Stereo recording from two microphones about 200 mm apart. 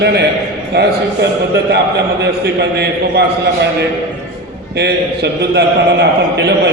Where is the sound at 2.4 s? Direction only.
55° right (ahead or behind).